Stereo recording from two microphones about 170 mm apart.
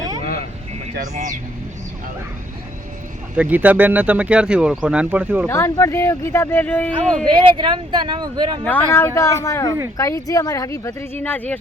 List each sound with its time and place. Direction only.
0.9 s speech: 50° right (ahead or behind)
3.3 s speech: 10° right (ahead or behind)
5.5 s speech: 15° left (ahead or behind)
7.3 s speech: 25° right (ahead or behind)
8.6 s speech: 10° left (ahead or behind)